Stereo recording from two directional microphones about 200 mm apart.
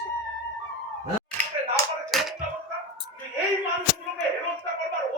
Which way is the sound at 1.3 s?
5° left (ahead or behind).